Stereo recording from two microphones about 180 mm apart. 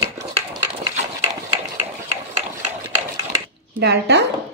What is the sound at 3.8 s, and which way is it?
Speech, 70° right (ahead or behind).